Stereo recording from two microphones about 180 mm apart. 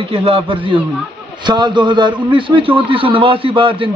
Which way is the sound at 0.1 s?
30° right (ahead or behind).